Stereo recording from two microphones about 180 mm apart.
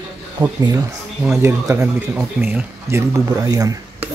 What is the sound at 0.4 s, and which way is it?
Speech, 20° right (ahead or behind).